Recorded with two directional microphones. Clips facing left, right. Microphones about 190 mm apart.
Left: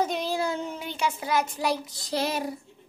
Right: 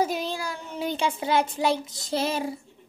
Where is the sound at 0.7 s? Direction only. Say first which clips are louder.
Right 3 dB; 30° right (ahead or behind).